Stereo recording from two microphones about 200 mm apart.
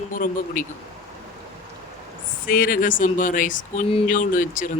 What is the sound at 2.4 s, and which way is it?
Speech, 45° left (ahead or behind).